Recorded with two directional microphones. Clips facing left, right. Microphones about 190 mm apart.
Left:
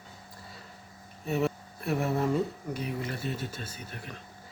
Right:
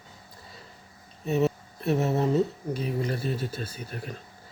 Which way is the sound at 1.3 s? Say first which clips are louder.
Right 4 dB; 20° right (ahead or behind).